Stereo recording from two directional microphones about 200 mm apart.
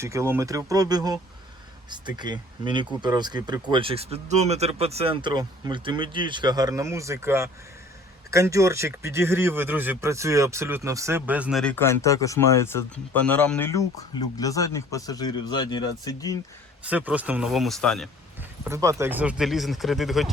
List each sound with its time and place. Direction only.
0.0 s speech: 15° right (ahead or behind)
11.6 s speech: 10° left (ahead or behind)
16.9 s speech: 5° right (ahead or behind)
18.6 s speech: 15° right (ahead or behind)